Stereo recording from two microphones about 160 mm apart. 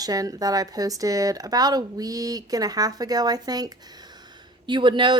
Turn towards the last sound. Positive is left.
turn(degrees=-30)  # may be behind; listen again after turning